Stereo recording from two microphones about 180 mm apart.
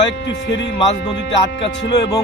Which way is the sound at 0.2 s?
85° left.